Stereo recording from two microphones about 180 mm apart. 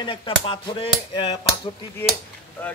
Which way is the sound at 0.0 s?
30° left (ahead or behind).